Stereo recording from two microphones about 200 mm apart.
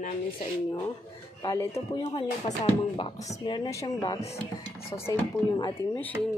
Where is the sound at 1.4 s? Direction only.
15° left (ahead or behind).